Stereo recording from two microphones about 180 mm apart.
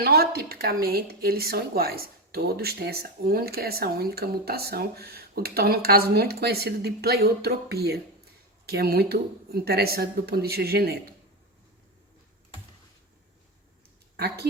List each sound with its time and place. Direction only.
0.0 s speech: 60° right (ahead or behind)
14.2 s speech: 60° right (ahead or behind)